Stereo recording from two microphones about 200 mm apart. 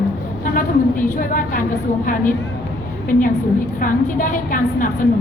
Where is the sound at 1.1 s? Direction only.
45° left (ahead or behind).